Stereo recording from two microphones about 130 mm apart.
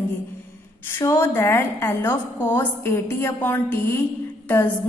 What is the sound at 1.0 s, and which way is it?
A woman's voice, 20° left (ahead or behind).